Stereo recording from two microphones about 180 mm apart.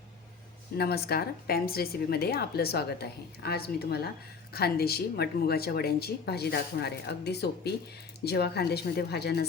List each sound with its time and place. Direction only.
0.8 s speech: 60° left (ahead or behind)